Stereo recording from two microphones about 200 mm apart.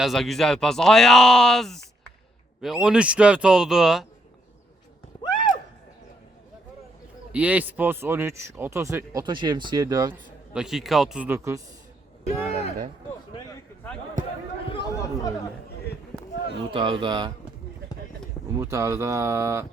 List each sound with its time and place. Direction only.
0.0 s speech: centre (ahead or behind)
5.2 s a sound: 20° left (ahead or behind)
7.3 s speech: 5° right (ahead or behind)
10.1 s speech: 5° right (ahead or behind)
14.7 s chatter: 20° left (ahead or behind)
16.7 s speech: 25° right (ahead or behind)
18.5 s speech: 15° right (ahead or behind)